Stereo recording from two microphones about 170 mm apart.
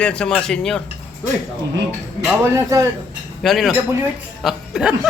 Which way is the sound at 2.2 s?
15° right (ahead or behind).